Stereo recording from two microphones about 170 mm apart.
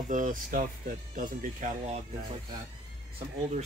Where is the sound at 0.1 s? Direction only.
50° right (ahead or behind).